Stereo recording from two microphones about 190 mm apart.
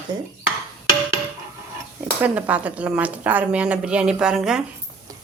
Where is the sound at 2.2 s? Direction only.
10° right (ahead or behind).